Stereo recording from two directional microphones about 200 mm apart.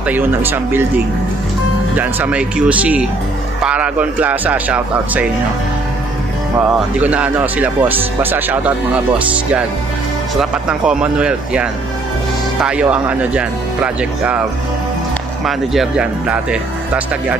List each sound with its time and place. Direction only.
0.1 s speech: 10° right (ahead or behind)
7.0 s speech: 5° right (ahead or behind)
10.4 s speech: 5° right (ahead or behind)
15.4 s speech: centre (ahead or behind)